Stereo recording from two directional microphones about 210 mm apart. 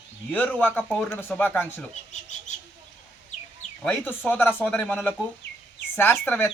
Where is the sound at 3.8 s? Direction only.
5° left (ahead or behind).